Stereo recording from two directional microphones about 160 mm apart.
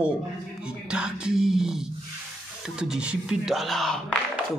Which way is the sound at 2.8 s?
5° right (ahead or behind).